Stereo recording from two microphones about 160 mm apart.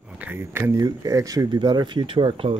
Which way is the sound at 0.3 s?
15° right (ahead or behind).